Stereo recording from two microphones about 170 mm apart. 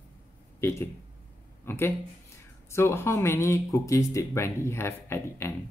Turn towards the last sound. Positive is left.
turn(degrees=15)  # may be behind; listen again after turning